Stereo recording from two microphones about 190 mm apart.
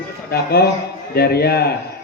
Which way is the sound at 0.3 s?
55° left (ahead or behind).